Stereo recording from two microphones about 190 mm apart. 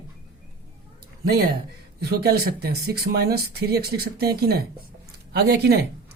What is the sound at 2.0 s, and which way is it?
Speech, 55° right (ahead or behind).